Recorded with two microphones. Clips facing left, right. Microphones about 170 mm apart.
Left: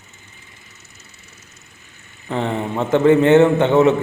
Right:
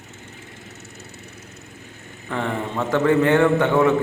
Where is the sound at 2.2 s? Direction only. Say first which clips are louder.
Left 3 dB; 20° left (ahead or behind).